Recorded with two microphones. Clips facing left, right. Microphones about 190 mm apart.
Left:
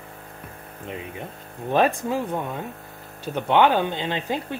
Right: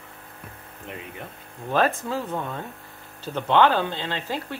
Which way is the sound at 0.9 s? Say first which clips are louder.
Left 4 dB; 20° left (ahead or behind).